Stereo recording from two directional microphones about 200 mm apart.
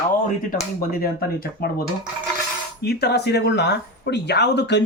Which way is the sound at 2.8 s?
50° left (ahead or behind).